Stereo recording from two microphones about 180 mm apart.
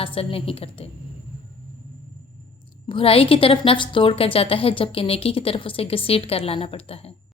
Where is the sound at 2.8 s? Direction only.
30° left (ahead or behind).